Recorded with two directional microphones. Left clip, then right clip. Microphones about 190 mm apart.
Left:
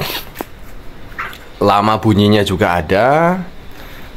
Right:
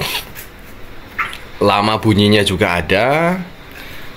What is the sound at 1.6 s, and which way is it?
Speech, 5° left (ahead or behind).